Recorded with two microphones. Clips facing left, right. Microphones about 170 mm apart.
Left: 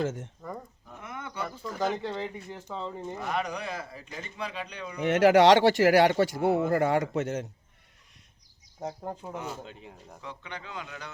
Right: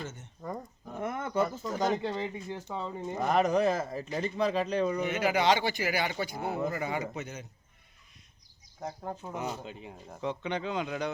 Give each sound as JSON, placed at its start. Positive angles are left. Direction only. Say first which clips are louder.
{"t": 0.0, "sound": "speech", "louder": "left 11 dB", "side_deg": 90}
{"t": 0.9, "sound": "bird", "louder": "right 8 dB", "side_deg": -45}
{"t": 2.0, "sound": "speech", "louder": "even", "side_deg": -15}
{"t": 3.2, "sound": "speech", "louder": "right 8 dB", "side_deg": -40}
{"t": 5.0, "sound": "speech", "louder": "left 12 dB", "side_deg": 80}
{"t": 8.8, "sound": "speech", "louder": "left 2 dB", "side_deg": 15}
{"t": 9.4, "sound": "speech", "louder": "right 2 dB", "side_deg": -5}
{"t": 10.2, "sound": "speech", "louder": "right 10 dB", "side_deg": -20}